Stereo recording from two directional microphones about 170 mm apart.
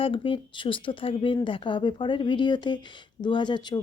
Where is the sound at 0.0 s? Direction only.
30° left (ahead or behind).